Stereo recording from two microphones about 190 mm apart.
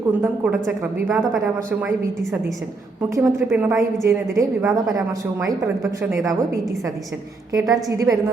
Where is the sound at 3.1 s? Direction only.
15° right (ahead or behind).